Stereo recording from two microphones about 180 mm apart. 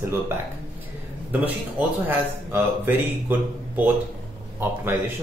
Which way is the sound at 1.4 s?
10° right (ahead or behind).